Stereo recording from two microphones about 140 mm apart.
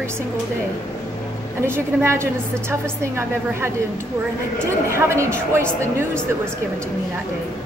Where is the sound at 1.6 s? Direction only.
15° right (ahead or behind).